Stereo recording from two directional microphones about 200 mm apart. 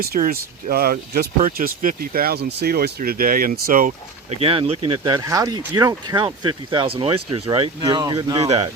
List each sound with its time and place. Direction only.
0.0 s speech: 45° right (ahead or behind); by 8.7 s 30° right (ahead or behind)